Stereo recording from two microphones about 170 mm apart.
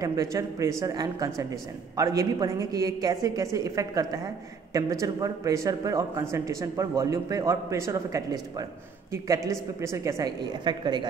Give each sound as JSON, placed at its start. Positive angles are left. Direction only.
{"t": 0.0, "sound": "speech", "side_deg": -20}